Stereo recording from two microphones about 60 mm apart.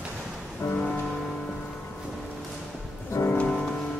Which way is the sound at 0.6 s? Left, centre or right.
Left.